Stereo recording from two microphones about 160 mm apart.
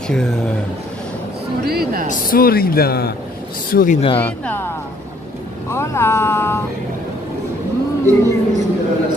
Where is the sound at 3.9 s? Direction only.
35° left (ahead or behind).